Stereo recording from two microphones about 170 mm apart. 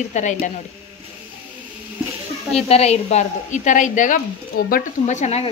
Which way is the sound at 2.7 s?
40° left (ahead or behind).